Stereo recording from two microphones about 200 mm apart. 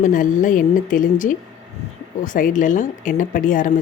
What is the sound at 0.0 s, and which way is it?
Speech, 40° left (ahead or behind).